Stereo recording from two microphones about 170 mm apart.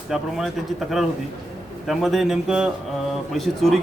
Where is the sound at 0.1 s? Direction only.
Centre (ahead or behind).